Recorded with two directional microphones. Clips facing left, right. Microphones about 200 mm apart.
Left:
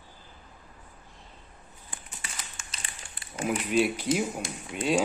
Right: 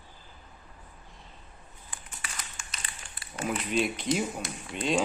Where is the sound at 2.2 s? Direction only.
25° left (ahead or behind).